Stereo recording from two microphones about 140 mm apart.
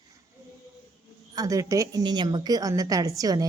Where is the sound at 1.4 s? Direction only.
25° right (ahead or behind).